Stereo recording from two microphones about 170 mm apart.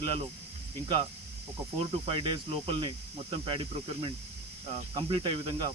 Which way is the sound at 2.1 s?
30° right (ahead or behind).